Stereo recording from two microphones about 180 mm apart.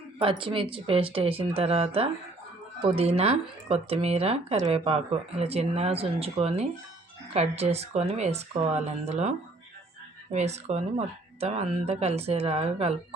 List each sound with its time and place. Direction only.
0.2 s speech: 30° right (ahead or behind)
10.3 s speech: 40° right (ahead or behind)